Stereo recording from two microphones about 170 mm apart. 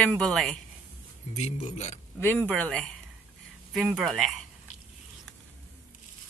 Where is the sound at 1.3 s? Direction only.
40° left (ahead or behind).